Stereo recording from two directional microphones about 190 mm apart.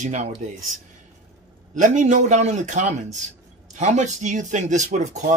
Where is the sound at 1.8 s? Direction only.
40° right (ahead or behind).